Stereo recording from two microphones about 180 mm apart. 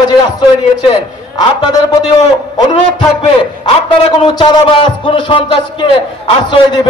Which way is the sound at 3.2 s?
35° left (ahead or behind).